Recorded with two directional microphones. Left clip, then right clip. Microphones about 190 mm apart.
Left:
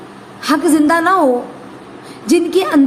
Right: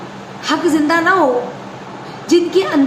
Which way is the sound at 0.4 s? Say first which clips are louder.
Left 2 dB; 55° left (ahead or behind).